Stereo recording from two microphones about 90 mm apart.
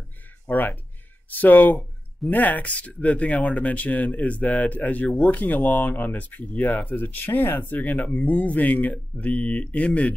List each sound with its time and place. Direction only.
0.5 s speech: 20° left (ahead or behind)